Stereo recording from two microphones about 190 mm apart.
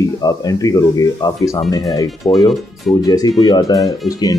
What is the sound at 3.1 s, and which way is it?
Speech, 20° left (ahead or behind).